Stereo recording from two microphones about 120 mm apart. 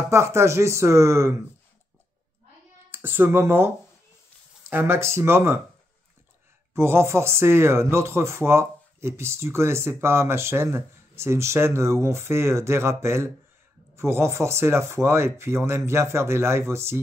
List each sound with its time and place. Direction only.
0.1 s speech: 20° right (ahead or behind)
2.9 s speech: 15° right (ahead or behind)
6.7 s speech: 20° right (ahead or behind)